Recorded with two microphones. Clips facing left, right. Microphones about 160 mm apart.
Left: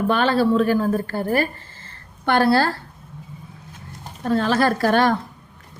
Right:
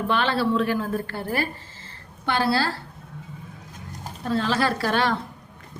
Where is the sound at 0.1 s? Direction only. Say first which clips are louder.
Left 4 dB; 45° left (ahead or behind).